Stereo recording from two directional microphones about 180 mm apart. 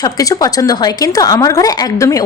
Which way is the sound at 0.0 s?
20° left (ahead or behind).